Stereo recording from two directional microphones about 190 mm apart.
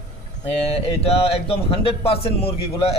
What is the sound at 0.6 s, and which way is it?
A man's voice, 30° left (ahead or behind).